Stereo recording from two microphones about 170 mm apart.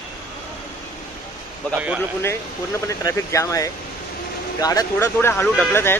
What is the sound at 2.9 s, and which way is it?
Speech, 20° left (ahead or behind).